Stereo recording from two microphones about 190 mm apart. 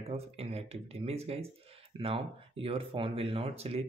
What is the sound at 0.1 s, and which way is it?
Speech, 30° right (ahead or behind).